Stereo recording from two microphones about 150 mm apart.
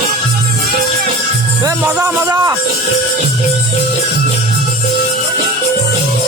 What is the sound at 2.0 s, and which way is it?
Speech, 25° right (ahead or behind).